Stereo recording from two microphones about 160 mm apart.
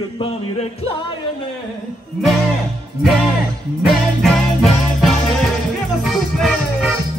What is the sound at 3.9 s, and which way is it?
Music, centre (ahead or behind).